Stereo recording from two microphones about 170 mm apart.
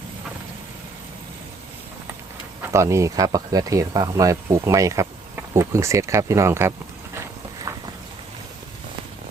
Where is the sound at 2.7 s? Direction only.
15° right (ahead or behind).